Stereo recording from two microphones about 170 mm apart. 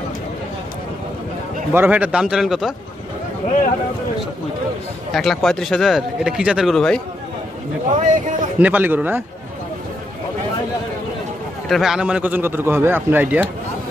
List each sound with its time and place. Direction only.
1.7 s a man's voice: 10° right (ahead or behind)
5.1 s speech: centre (ahead or behind)
7.9 s speech: 50° right (ahead or behind)
8.5 s a man's voice: 10° right (ahead or behind)
11.7 s a man's voice: 5° right (ahead or behind)